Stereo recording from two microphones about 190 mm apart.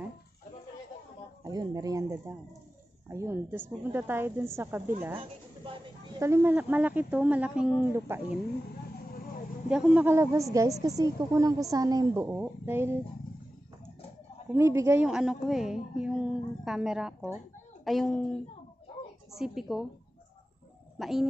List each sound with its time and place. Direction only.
1.4 s a woman's voice: 20° right (ahead or behind)
9.7 s a woman's voice: 5° right (ahead or behind)
14.5 s a woman's voice: 15° right (ahead or behind)
15.0 s a woman's voice: 5° right (ahead or behind)
21.0 s a woman's voice: centre (ahead or behind)